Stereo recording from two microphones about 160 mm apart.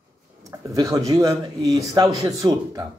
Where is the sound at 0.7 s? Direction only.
20° right (ahead or behind).